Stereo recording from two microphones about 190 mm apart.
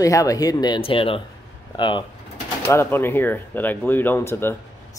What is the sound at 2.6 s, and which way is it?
Speech, 10° left (ahead or behind).